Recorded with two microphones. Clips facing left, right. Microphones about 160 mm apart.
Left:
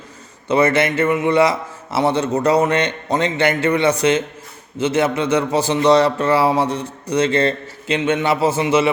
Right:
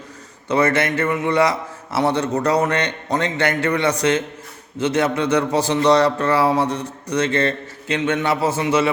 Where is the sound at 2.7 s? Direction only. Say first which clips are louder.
Left 3 dB; 25° left (ahead or behind).